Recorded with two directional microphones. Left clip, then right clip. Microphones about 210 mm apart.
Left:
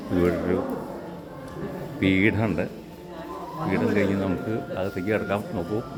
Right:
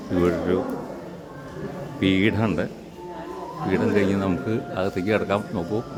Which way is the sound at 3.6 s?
30° right (ahead or behind).